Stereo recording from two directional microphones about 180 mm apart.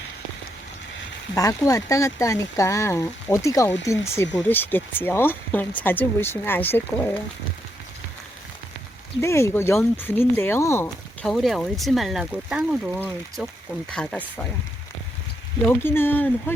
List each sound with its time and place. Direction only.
1.4 s speech: 20° left (ahead or behind)
9.2 s speech: 15° left (ahead or behind)
10.8 s speech: centre (ahead or behind)
15.6 s speech: 10° left (ahead or behind)